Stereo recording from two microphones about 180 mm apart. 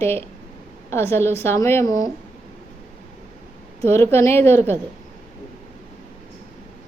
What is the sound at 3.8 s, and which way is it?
Speech, 15° left (ahead or behind).